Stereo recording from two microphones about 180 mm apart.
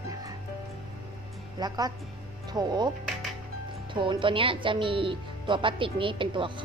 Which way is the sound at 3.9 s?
25° right (ahead or behind).